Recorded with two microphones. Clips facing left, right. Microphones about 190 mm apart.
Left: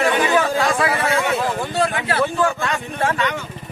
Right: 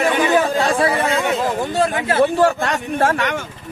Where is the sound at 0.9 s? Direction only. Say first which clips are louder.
Right 1 dB; 15° right (ahead or behind).